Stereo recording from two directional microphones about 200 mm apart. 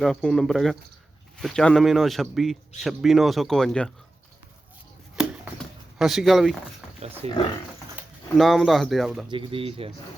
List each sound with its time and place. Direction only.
0.0 s a man's voice: 5° left (ahead or behind)
6.0 s a man's voice: centre (ahead or behind)
6.8 s roaring cats: centre (ahead or behind)
7.2 s speech: 30° right (ahead or behind)
8.4 s a man's voice: centre (ahead or behind)
9.3 s speech: 25° right (ahead or behind)